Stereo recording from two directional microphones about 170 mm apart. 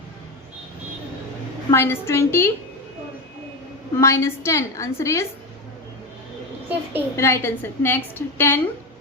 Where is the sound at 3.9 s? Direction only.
15° left (ahead or behind).